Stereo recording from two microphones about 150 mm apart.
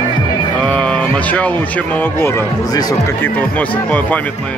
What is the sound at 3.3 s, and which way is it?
Speech, 10° left (ahead or behind).